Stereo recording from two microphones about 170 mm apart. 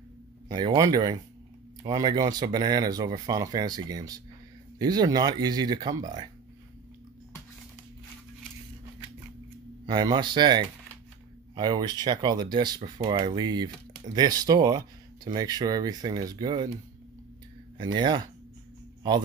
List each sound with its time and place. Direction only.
0.5 s speech: 25° right (ahead or behind)
9.8 s speech: 25° right (ahead or behind)
17.7 s speech: 25° right (ahead or behind)